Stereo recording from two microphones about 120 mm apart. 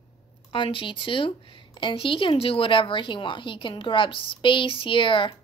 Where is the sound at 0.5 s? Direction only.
45° left (ahead or behind).